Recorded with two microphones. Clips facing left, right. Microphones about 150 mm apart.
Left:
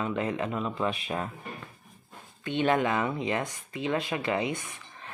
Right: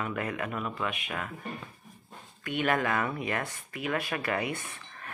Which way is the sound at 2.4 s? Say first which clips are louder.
Left 3 dB; 25° left (ahead or behind).